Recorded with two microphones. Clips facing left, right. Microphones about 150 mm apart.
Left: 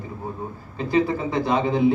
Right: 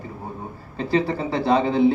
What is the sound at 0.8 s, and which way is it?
Speech, 30° right (ahead or behind).